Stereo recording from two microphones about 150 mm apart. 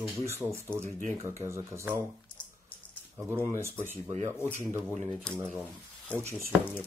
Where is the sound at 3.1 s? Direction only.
15° right (ahead or behind).